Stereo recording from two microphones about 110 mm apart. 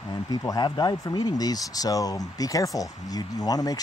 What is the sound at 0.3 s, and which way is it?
Speech, 35° left (ahead or behind).